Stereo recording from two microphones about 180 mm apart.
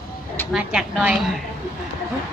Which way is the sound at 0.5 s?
5° right (ahead or behind).